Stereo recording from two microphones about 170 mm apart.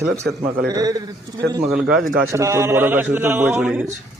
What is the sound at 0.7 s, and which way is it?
Speech, 20° right (ahead or behind).